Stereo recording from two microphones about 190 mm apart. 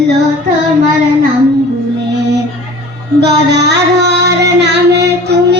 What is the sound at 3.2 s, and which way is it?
Child singing, 60° right (ahead or behind).